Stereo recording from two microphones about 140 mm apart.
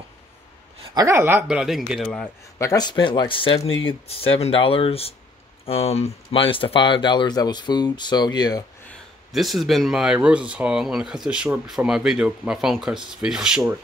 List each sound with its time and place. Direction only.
0.9 s speech: 20° right (ahead or behind); by 2.2 s 5° left (ahead or behind)
2.6 s speech: 25° left (ahead or behind)
9.3 s speech: centre (ahead or behind)